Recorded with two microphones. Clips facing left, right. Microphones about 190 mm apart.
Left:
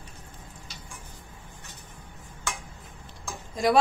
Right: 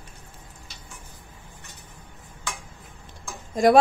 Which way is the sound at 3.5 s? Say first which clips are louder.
Right 6 dB; 50° right (ahead or behind).